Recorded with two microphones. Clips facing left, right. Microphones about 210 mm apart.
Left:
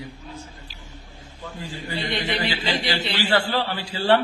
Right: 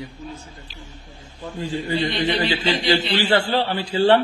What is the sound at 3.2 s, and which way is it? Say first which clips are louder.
Speech: right 3 dB; 35° right (ahead or behind).